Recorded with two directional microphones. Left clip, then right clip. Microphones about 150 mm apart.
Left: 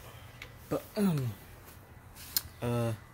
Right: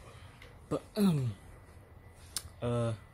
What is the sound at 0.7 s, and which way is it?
Speech, 25° right (ahead or behind).